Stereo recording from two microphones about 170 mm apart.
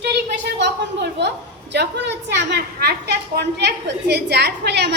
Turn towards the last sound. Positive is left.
turn(degrees=-85)